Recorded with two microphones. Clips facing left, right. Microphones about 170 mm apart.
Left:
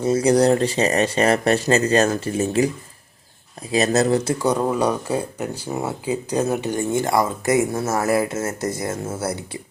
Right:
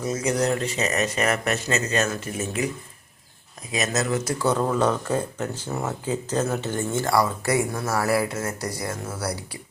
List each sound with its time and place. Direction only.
0.0 s speech: 35° left (ahead or behind)
3.7 s speech: 35° left (ahead or behind)
4.4 s speech: 15° left (ahead or behind)